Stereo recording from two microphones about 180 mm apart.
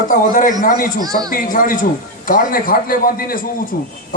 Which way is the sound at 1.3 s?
50° left (ahead or behind).